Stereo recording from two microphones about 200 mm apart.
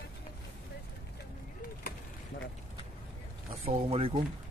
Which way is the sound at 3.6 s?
30° right (ahead or behind).